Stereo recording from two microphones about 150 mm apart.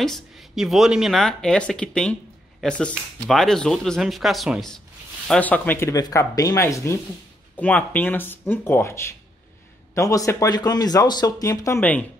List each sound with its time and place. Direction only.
0.0 s speech: centre (ahead or behind)
3.3 s speech: 5° left (ahead or behind)